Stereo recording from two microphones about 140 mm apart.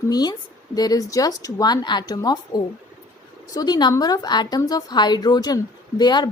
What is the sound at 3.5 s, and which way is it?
A woman's voice, 30° left (ahead or behind).